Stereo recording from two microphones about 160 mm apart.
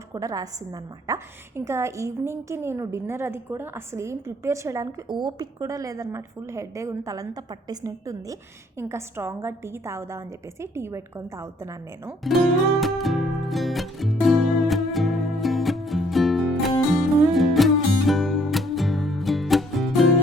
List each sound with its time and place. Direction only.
0.1 s a woman's voice: 20° right (ahead or behind)
12.2 s music: centre (ahead or behind)